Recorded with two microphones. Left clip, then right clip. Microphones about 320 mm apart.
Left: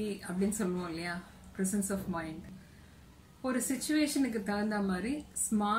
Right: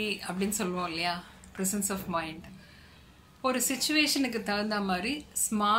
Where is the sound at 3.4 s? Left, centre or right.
Centre.